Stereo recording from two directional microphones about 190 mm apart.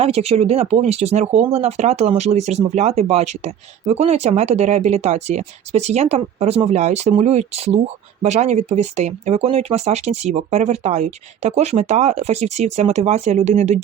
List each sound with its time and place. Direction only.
0.0 s speech: 30° right (ahead or behind)